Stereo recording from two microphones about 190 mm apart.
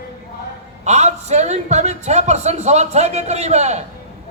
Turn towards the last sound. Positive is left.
turn(degrees=-35)  # may be behind; listen again after turning